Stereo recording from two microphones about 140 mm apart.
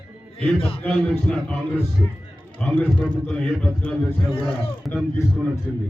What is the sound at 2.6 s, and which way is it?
A man's voice, 10° left (ahead or behind).